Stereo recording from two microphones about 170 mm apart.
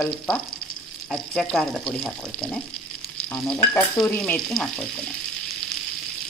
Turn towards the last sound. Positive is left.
turn(degrees=5)  # may be behind; listen again after turning